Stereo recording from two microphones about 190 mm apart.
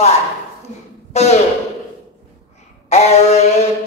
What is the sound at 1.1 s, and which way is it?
Speech, 35° left (ahead or behind).